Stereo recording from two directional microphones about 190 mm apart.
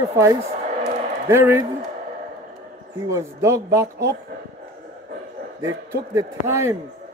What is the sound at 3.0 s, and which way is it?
Speech, 15° right (ahead or behind).